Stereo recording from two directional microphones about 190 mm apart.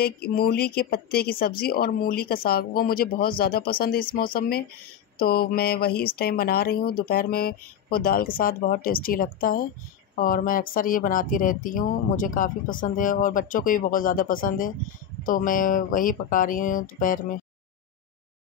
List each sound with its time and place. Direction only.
0.0 s speech: 55° left (ahead or behind)